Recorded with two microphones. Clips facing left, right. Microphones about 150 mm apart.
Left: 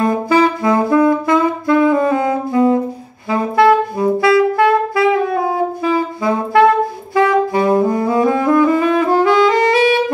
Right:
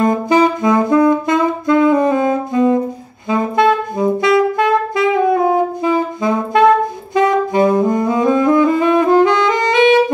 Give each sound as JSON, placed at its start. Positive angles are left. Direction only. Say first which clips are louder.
{"t": 0.0, "sound": "saxophone", "louder": "right 1 dB", "side_deg": -20}
{"t": 3.3, "sound": "music", "louder": "left 1 dB", "side_deg": -20}
{"t": 7.2, "sound": "saxophone", "louder": "even", "side_deg": -20}